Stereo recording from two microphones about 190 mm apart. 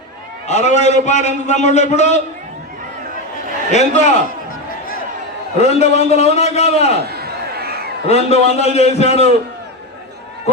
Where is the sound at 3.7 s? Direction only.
35° left (ahead or behind).